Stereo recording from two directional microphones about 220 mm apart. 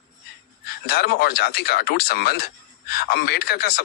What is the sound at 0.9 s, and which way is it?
Speech, 45° left (ahead or behind).